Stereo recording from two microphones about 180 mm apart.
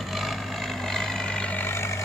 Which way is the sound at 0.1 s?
Centre (ahead or behind).